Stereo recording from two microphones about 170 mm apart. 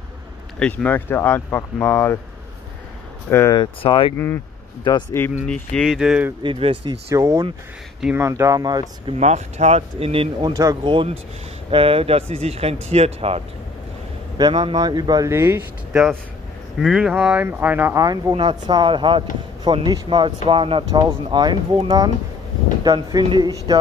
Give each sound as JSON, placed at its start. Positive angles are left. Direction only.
{"t": 0.6, "sound": "speech", "side_deg": 10}
{"t": 3.3, "sound": "speech", "side_deg": 15}
{"t": 5.2, "sound": "speech", "side_deg": 15}
{"t": 6.4, "sound": "speech", "side_deg": -30}
{"t": 7.1, "sound": "speech", "side_deg": -20}
{"t": 9.2, "sound": "speech", "side_deg": -40}
{"t": 14.5, "sound": "speech", "side_deg": -30}
{"t": 15.9, "sound": "speech", "side_deg": -5}
{"t": 18.0, "sound": "speech", "side_deg": -20}